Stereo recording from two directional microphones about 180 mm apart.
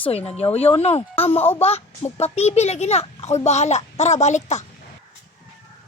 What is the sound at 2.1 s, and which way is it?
Speech, 35° left (ahead or behind).